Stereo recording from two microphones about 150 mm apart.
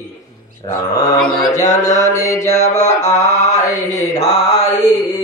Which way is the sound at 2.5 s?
50° left (ahead or behind).